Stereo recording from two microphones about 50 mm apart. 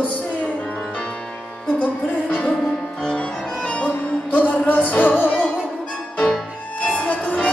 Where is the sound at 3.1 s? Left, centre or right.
Left.